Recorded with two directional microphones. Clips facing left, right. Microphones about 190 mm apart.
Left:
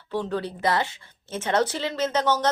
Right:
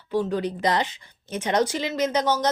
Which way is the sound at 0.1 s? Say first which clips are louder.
Right 3 dB; 15° right (ahead or behind).